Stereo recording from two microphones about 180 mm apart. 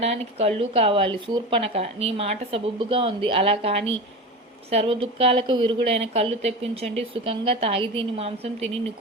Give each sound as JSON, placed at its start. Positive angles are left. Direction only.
{"t": 0.0, "sound": "a woman's voice", "side_deg": -35}